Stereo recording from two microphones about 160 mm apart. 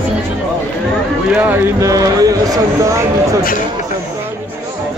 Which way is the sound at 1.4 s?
15° right (ahead or behind).